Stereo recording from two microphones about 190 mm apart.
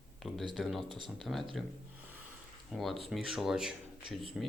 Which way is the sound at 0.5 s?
Centre (ahead or behind).